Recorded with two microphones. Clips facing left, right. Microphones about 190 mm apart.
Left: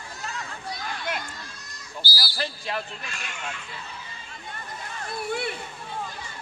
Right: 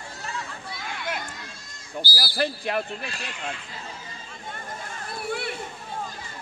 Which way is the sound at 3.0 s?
35° right (ahead or behind).